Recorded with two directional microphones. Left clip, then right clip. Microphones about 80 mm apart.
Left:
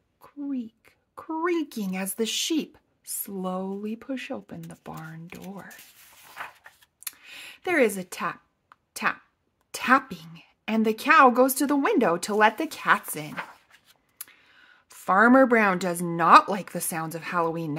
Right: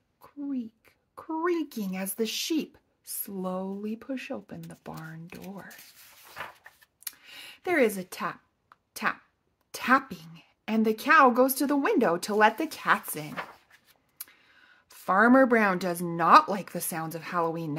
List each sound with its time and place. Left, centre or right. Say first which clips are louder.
0.2 s a woman's voice: left 2 dB; left
7.1 s a sound: left 3 dB; left
9.7 s a woman's voice: left 3 dB; left
14.1 s a woman's voice: left 2 dB; left